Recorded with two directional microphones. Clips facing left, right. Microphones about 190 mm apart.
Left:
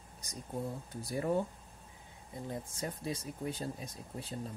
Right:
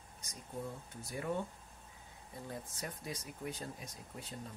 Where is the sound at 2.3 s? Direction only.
25° left (ahead or behind).